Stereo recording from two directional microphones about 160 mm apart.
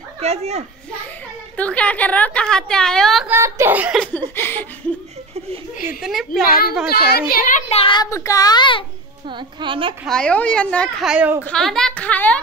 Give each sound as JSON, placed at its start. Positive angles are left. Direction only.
{"t": 0.2, "sound": "a child's voice", "side_deg": -40}
{"t": 1.6, "sound": "a woman's voice", "side_deg": 5}
{"t": 3.3, "sound": "a child's voice", "side_deg": -15}
{"t": 4.4, "sound": "a woman's voice", "side_deg": 15}
{"t": 5.9, "sound": "a woman's voice", "side_deg": 0}
{"t": 6.9, "sound": "a child's voice", "side_deg": 75}
{"t": 7.7, "sound": "a woman's voice", "side_deg": 30}
{"t": 8.1, "sound": "a child's voice", "side_deg": 20}
{"t": 9.3, "sound": "a woman's voice", "side_deg": -30}
{"t": 10.0, "sound": "a woman's voice", "side_deg": 5}
{"t": 11.1, "sound": "a child's voice", "side_deg": -10}
{"t": 11.4, "sound": "a woman's voice", "side_deg": 5}